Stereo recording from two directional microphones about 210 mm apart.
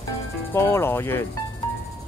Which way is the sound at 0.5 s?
10° left (ahead or behind).